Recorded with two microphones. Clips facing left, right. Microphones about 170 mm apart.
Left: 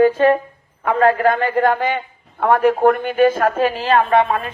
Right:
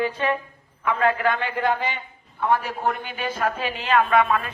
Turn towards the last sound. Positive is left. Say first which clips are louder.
# left 4 dB
turn(degrees=30)  # may be behind; listen again after turning